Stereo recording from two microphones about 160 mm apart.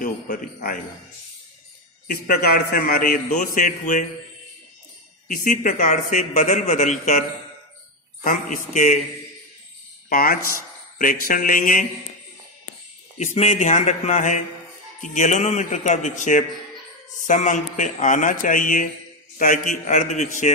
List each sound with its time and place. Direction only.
0.0 s a man's voice: 60° left (ahead or behind)
2.2 s a man's voice: 60° left (ahead or behind)
5.3 s speech: 60° left (ahead or behind)
10.0 s speech: 60° left (ahead or behind)
13.2 s speech: 45° left (ahead or behind)